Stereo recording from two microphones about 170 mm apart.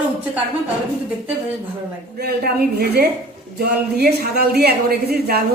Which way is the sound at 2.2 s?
65° right (ahead or behind).